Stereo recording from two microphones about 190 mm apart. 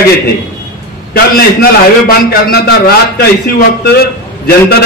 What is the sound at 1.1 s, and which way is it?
A man's voice, 55° left (ahead or behind).